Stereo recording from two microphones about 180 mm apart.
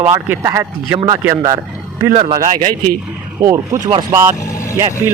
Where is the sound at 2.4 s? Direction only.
40° right (ahead or behind).